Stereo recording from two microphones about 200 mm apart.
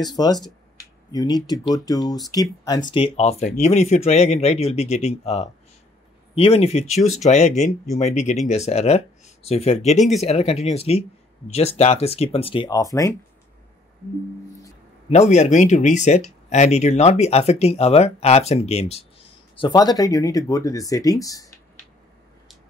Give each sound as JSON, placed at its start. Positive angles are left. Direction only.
{"t": 0.0, "sound": "speech", "side_deg": 20}
{"t": 15.0, "sound": "speech", "side_deg": 35}